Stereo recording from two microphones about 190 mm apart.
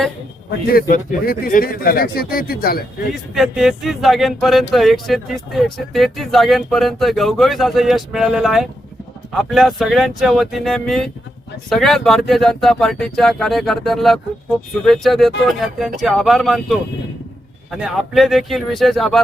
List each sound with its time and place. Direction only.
0.7 s speech: 50° left (ahead or behind)
3.3 s speech: centre (ahead or behind)